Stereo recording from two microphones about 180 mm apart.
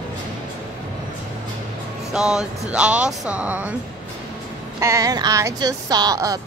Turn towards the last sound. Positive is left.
turn(degrees=-20)  # may be behind; listen again after turning